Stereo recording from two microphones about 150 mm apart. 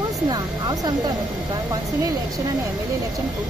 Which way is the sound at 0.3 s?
25° right (ahead or behind).